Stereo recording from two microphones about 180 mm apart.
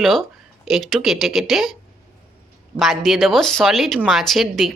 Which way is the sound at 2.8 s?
Centre (ahead or behind).